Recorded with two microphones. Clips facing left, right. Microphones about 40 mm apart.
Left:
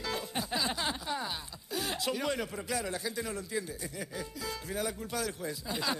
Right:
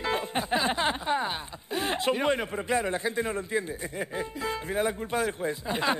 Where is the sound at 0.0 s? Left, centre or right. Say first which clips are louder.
Right 7 dB; right.